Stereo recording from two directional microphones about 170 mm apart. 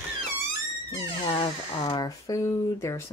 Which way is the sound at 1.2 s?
30° left (ahead or behind).